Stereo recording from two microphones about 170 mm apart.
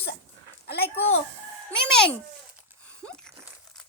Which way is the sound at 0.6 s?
70° left (ahead or behind).